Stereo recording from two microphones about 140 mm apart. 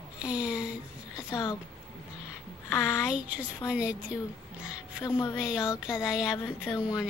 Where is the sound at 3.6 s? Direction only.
10° right (ahead or behind).